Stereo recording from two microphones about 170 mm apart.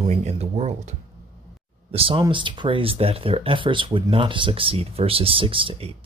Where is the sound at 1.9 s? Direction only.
35° right (ahead or behind).